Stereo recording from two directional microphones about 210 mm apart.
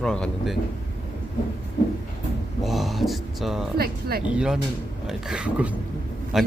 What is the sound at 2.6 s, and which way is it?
Speech, centre (ahead or behind).